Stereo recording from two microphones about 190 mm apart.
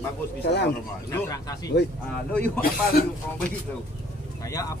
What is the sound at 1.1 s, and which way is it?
Speech, 15° left (ahead or behind).